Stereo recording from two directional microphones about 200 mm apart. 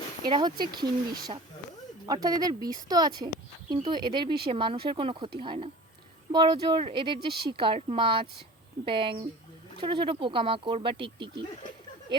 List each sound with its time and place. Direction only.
0.3 s speech: 20° right (ahead or behind)